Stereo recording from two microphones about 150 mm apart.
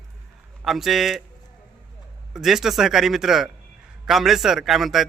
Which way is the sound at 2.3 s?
Centre (ahead or behind).